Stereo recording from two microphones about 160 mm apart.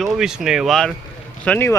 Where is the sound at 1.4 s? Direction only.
15° left (ahead or behind).